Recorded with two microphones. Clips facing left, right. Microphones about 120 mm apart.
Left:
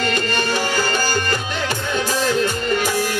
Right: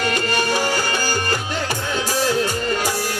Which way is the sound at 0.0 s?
15° right (ahead or behind).